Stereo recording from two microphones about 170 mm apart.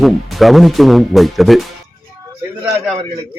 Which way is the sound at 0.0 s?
Centre (ahead or behind).